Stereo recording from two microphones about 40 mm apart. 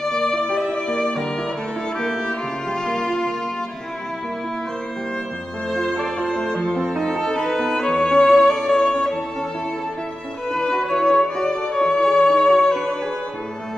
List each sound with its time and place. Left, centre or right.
0.0 s music: centre
5.7 s music: centre
6.9 s music: centre
7.2 s violin: centre
7.4 s music: centre
10.5 s music: centre